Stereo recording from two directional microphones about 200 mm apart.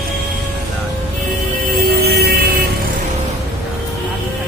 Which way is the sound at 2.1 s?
50° right (ahead or behind).